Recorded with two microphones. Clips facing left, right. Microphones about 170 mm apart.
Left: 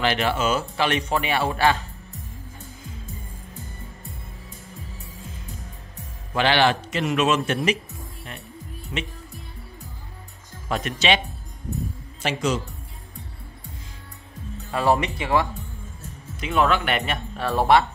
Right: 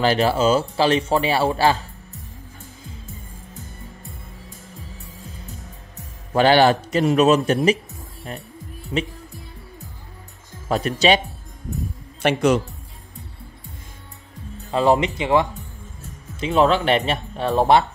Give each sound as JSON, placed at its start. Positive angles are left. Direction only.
{"t": 0.0, "sound": "a man's voice", "side_deg": -35}
{"t": 6.3, "sound": "a man's voice", "side_deg": -40}
{"t": 8.9, "sound": "speech", "side_deg": -30}
{"t": 10.7, "sound": "a man's voice", "side_deg": -35}
{"t": 12.2, "sound": "speech", "side_deg": -60}
{"t": 14.7, "sound": "speech", "side_deg": -20}